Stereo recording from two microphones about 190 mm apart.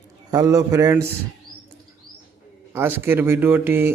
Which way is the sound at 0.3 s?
20° right (ahead or behind).